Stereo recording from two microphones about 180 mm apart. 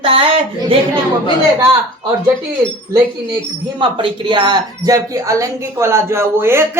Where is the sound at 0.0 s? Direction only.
30° right (ahead or behind).